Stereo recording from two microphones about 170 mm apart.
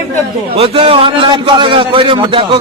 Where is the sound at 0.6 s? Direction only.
35° right (ahead or behind).